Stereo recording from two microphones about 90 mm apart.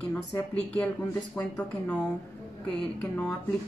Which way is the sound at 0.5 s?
10° left (ahead or behind).